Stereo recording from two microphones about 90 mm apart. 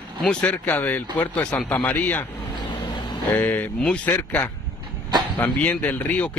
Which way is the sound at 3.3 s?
20° left (ahead or behind).